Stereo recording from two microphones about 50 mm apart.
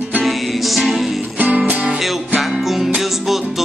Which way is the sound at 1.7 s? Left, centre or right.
Right.